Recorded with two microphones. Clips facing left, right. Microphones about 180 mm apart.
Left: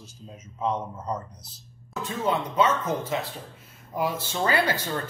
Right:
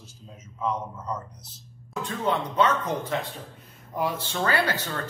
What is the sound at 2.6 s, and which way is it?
Speech, 15° right (ahead or behind).